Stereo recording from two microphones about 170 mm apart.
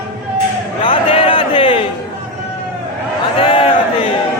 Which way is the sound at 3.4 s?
30° left (ahead or behind).